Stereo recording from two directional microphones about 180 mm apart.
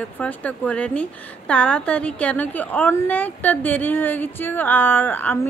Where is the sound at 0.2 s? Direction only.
10° left (ahead or behind).